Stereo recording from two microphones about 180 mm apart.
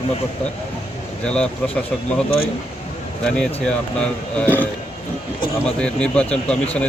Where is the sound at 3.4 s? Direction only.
5° left (ahead or behind).